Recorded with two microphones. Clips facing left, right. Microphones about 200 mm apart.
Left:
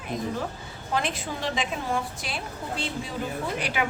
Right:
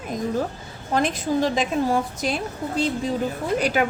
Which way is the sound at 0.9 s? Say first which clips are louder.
Right 8 dB; 40° right (ahead or behind).